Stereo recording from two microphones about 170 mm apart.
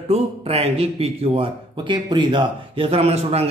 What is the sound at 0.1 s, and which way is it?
Speech, 35° right (ahead or behind).